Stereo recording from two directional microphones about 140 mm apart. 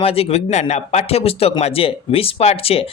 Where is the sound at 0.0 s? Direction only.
45° left (ahead or behind).